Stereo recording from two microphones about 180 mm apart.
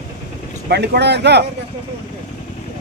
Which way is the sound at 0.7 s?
65° right (ahead or behind).